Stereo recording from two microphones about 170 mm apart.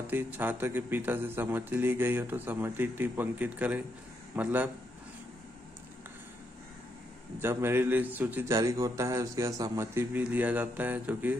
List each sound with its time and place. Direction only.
0.0 s a man's voice: 10° right (ahead or behind)
7.3 s a man's voice: 15° right (ahead or behind)